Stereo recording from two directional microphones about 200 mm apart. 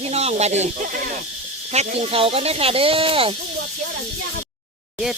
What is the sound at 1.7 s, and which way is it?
Speech, 30° right (ahead or behind).